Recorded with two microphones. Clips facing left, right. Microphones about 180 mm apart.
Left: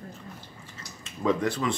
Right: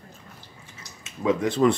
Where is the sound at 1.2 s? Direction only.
10° right (ahead or behind).